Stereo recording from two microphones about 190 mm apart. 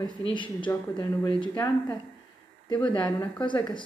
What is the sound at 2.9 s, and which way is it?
Speech, 25° left (ahead or behind).